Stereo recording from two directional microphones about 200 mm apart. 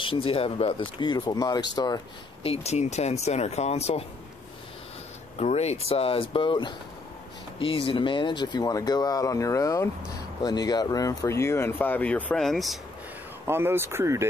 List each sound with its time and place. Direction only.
0.0 s speech: 25° left (ahead or behind)
2.4 s speech: 30° left (ahead or behind)
5.4 s speech: 35° left (ahead or behind); by 12.7 s centre (ahead or behind)
13.5 s speech: 10° right (ahead or behind)